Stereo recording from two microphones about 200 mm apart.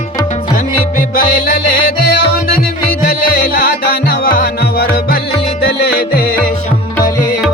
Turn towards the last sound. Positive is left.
turn(degrees=50)  # may be behind; listen again after turning